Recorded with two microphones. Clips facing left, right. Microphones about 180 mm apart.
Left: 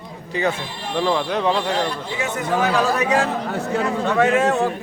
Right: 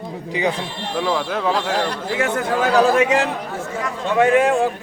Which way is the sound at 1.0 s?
5° right (ahead or behind).